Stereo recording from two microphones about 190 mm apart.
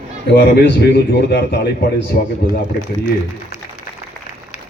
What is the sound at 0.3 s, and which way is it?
A man's voice, 60° left (ahead or behind).